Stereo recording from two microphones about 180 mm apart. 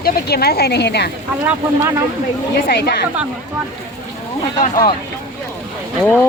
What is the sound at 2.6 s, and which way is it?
Speech, 60° left (ahead or behind).